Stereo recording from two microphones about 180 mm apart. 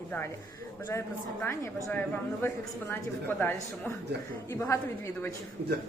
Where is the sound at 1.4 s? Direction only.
15° left (ahead or behind).